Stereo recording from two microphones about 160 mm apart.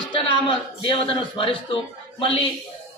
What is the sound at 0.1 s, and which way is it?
A man's voice, 30° left (ahead or behind).